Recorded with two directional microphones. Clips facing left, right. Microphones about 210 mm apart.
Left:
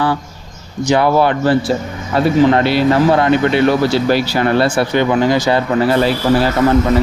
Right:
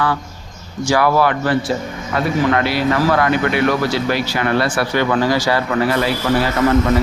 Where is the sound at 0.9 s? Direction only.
25° left (ahead or behind).